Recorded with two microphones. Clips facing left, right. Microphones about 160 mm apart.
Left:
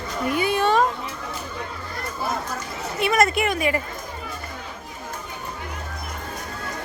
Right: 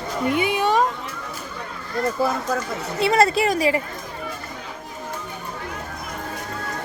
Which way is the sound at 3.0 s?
30° right (ahead or behind).